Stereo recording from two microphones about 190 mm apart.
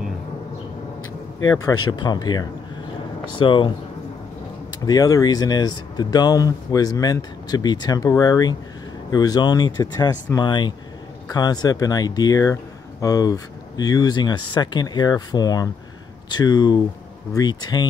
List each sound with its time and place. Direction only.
1.5 s speech: 20° left (ahead or behind)
4.7 s speech: 20° left (ahead or behind)